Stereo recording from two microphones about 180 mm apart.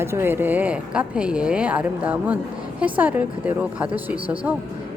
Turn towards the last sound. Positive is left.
turn(degrees=-10)  # may be behind; listen again after turning